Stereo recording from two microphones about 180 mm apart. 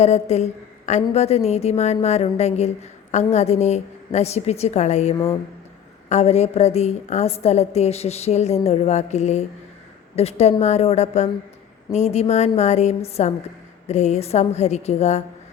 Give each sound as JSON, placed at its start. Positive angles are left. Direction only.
{"t": 0.0, "sound": "a woman's voice", "side_deg": 40}
{"t": 5.1, "sound": "speech", "side_deg": 20}
{"t": 6.1, "sound": "a woman's voice", "side_deg": 35}